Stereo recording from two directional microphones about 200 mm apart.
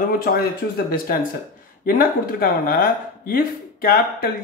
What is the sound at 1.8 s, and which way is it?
Speech, 45° left (ahead or behind).